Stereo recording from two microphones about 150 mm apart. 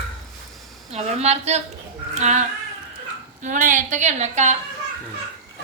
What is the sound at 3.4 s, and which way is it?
A woman's voice, 60° right (ahead or behind).